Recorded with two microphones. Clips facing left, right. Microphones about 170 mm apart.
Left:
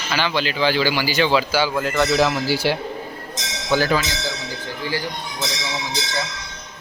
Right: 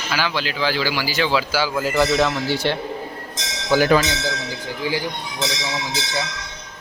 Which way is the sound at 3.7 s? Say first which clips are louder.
Right 2 dB; 10° right (ahead or behind).